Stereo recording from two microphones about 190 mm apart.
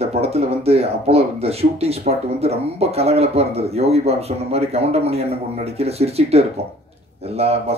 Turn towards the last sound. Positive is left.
turn(degrees=-35)  # may be behind; listen again after turning